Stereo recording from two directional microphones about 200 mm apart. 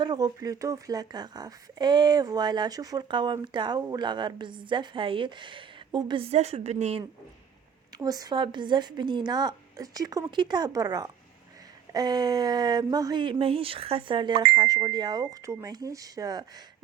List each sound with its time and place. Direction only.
0.0 s a woman's voice: 20° right (ahead or behind)
6.3 s a woman's voice: 35° right (ahead or behind)
7.9 s a woman's voice: 20° right (ahead or behind)